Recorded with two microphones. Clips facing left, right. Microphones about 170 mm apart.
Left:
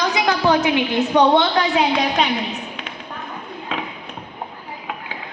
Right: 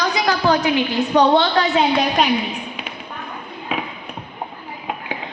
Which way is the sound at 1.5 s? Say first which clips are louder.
Right 1 dB; centre (ahead or behind).